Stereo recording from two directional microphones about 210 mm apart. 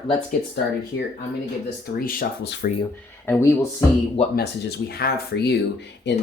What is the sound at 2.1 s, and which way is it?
Speech, 50° left (ahead or behind).